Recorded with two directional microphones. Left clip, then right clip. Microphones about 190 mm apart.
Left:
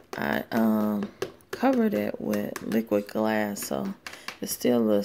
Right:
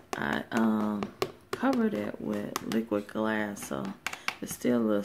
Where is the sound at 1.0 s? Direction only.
5° left (ahead or behind).